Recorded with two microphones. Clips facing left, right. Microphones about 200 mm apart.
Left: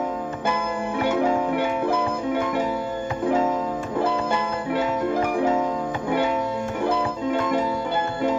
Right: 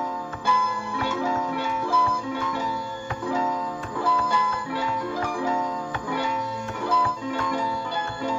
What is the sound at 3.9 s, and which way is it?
Music, 25° left (ahead or behind).